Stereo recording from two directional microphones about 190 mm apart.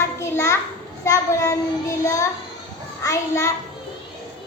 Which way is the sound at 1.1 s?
15° left (ahead or behind).